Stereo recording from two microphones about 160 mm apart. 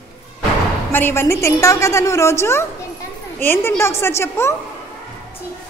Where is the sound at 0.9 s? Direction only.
15° left (ahead or behind).